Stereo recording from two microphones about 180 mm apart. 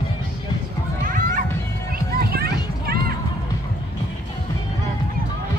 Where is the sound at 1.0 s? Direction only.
50° right (ahead or behind).